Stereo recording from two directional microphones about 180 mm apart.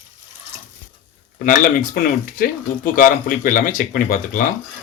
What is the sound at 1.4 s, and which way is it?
Speech, 50° left (ahead or behind).